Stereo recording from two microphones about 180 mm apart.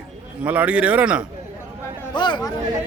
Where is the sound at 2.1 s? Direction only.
25° left (ahead or behind).